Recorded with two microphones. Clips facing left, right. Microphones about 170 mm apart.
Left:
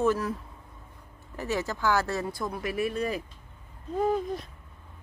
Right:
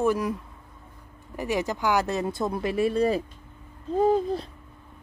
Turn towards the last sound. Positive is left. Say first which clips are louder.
# right 5 dB
turn(degrees=-30)  # may be behind; listen again after turning